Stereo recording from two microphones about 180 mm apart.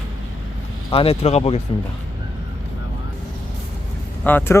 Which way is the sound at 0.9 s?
30° left (ahead or behind).